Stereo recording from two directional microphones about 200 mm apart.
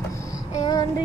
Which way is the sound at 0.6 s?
20° left (ahead or behind).